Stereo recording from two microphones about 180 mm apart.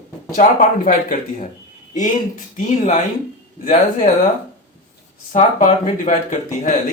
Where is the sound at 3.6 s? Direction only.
45° left (ahead or behind).